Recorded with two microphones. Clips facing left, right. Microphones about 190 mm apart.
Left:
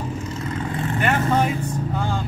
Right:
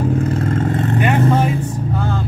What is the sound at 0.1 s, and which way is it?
Vehicle, 55° right (ahead or behind).